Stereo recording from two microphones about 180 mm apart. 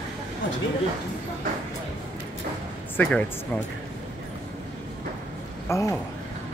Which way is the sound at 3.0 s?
10° left (ahead or behind).